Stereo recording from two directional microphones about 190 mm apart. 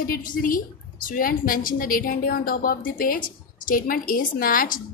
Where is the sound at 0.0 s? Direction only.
45° left (ahead or behind).